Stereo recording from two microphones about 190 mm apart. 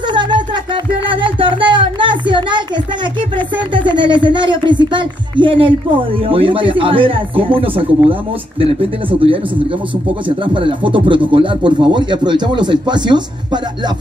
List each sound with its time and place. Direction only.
0.1 s music: 25° right (ahead or behind)
1.0 s a sound: 25° right (ahead or behind)
3.3 s speech: 25° right (ahead or behind)
10.2 s speech: 25° right (ahead or behind)